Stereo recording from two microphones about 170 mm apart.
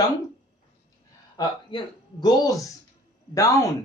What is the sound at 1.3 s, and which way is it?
Speech, 25° left (ahead or behind).